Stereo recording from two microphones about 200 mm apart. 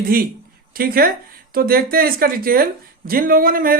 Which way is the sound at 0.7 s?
45° right (ahead or behind).